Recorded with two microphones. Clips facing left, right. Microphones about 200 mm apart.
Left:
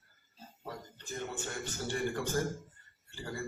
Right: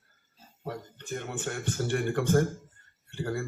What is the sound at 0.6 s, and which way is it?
Speech, 60° right (ahead or behind).